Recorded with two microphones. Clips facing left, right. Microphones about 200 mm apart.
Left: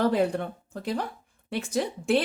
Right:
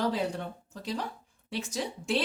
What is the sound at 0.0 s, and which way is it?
A woman's voice, 55° left (ahead or behind).